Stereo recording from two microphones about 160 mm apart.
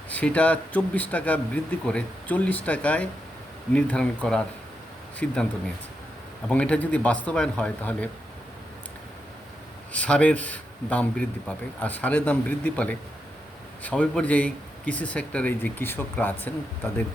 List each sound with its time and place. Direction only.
0.1 s speech: 10° left (ahead or behind)
6.5 s speech: 5° left (ahead or behind)
9.9 s speech: 10° left (ahead or behind)